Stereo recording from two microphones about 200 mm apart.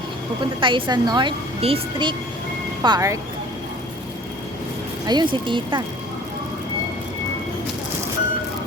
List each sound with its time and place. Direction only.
0.6 s speech: 25° right (ahead or behind)
5.0 s speech: 25° right (ahead or behind)